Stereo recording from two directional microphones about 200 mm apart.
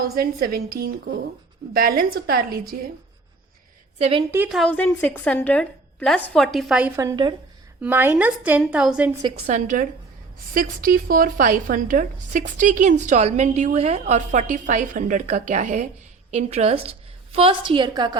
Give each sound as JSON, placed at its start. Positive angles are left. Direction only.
{"t": 0.2, "sound": "a woman's voice", "side_deg": -45}
{"t": 3.9, "sound": "a woman's voice", "side_deg": -30}
{"t": 4.3, "sound": "a woman's voice", "side_deg": -5}
{"t": 7.8, "sound": "a woman's voice", "side_deg": -10}
{"t": 9.5, "sound": "a woman's voice", "side_deg": -40}